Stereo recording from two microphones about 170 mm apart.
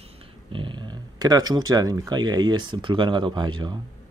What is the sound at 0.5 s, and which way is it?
Speech, 30° right (ahead or behind).